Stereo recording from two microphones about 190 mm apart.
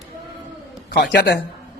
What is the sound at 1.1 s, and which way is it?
Speech, 65° left (ahead or behind).